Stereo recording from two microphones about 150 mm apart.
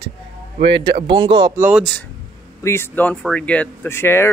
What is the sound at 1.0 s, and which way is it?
Speech, 30° right (ahead or behind).